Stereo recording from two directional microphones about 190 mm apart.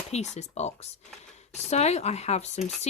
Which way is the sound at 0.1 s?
35° left (ahead or behind).